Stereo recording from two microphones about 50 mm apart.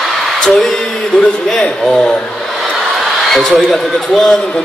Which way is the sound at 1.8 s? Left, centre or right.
Centre.